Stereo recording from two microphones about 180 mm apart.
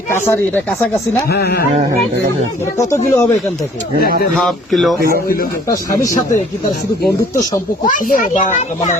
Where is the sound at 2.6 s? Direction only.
15° left (ahead or behind).